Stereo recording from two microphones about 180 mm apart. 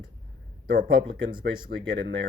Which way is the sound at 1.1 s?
90° right.